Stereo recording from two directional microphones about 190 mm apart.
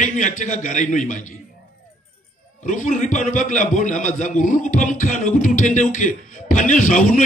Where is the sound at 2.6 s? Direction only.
40° left (ahead or behind).